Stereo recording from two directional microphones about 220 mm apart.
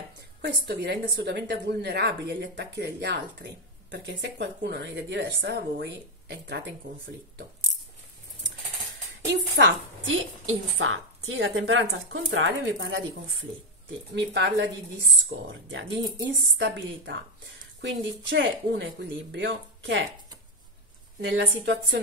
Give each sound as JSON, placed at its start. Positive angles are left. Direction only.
{"t": 0.4, "sound": "speech", "side_deg": -50}
{"t": 9.3, "sound": "a woman's voice", "side_deg": -55}
{"t": 21.2, "sound": "speech", "side_deg": -55}